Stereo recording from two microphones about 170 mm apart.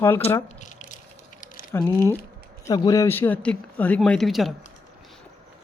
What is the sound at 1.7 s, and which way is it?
Speech, 15° left (ahead or behind).